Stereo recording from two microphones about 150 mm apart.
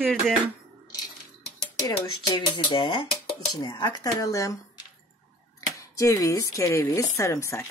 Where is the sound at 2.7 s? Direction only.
30° left (ahead or behind).